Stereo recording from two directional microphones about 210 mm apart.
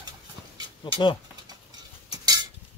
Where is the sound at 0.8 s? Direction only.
25° left (ahead or behind).